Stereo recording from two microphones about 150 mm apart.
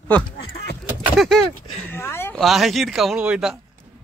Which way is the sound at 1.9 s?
15° left (ahead or behind).